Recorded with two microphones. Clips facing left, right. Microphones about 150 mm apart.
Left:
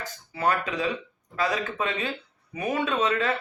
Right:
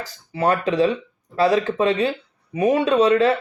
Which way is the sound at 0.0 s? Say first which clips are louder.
Right 5 dB; 30° right (ahead or behind).